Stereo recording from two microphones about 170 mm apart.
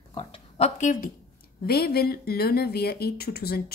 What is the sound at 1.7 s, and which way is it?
Speech, 65° left (ahead or behind).